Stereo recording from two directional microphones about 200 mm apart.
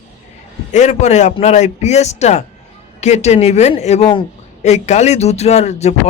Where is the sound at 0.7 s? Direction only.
35° left (ahead or behind).